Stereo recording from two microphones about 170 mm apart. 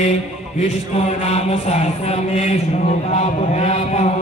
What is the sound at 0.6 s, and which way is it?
Speech, 40° left (ahead or behind).